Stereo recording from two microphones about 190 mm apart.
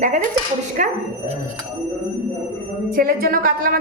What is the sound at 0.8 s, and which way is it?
Speech, 45° right (ahead or behind).